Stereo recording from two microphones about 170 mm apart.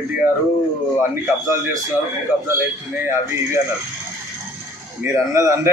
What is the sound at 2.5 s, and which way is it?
A man's voice, 15° right (ahead or behind).